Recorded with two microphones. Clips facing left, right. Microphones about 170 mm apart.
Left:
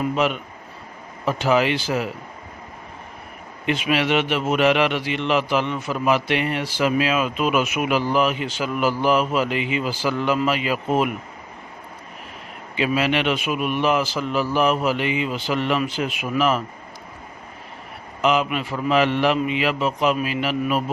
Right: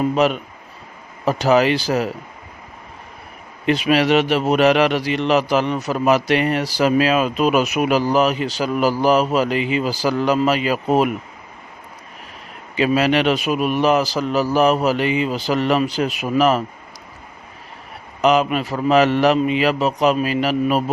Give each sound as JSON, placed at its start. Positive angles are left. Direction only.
{"t": 0.0, "sound": "a man's voice", "side_deg": -40}
{"t": 3.7, "sound": "a man's voice", "side_deg": -40}
{"t": 12.7, "sound": "a man's voice", "side_deg": -40}
{"t": 18.2, "sound": "a man's voice", "side_deg": -40}